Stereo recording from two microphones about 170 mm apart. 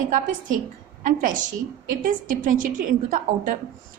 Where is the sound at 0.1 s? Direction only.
50° right (ahead or behind).